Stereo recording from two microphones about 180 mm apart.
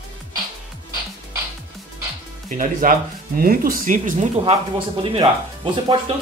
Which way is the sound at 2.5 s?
45° right (ahead or behind).